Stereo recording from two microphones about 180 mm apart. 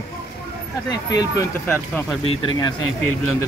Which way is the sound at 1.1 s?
20° left (ahead or behind).